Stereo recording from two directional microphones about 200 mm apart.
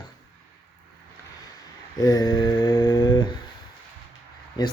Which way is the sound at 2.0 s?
15° left (ahead or behind).